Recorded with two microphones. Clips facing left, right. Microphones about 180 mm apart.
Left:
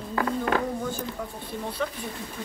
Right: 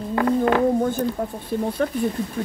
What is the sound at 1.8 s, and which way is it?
Speech, 50° right (ahead or behind).